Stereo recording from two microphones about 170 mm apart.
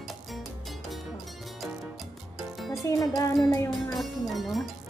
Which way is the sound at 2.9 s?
20° left (ahead or behind).